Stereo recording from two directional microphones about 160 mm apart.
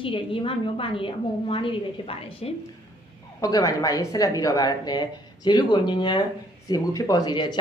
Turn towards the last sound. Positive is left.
turn(degrees=25)  # may be behind; listen again after turning